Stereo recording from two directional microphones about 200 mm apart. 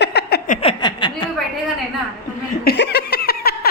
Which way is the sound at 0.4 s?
35° left (ahead or behind).